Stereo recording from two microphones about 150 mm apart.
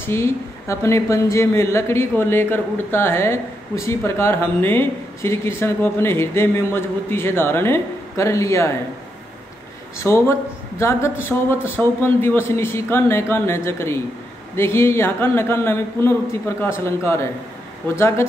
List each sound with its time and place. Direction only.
0.0 s a woman's voice: 15° left (ahead or behind)
10.0 s a woman's voice: 20° left (ahead or behind)